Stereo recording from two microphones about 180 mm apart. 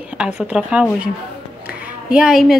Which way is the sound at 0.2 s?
5° right (ahead or behind).